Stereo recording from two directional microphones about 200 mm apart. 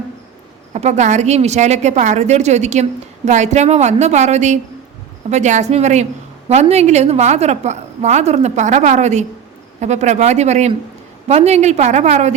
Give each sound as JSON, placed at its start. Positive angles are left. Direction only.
{"t": 0.7, "sound": "a woman's voice", "side_deg": -35}